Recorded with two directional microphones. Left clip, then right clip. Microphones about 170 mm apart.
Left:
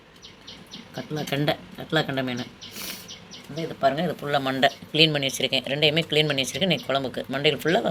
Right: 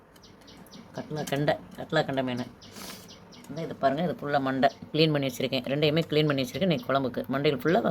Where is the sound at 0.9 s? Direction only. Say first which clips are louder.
Left 3 dB; centre (ahead or behind).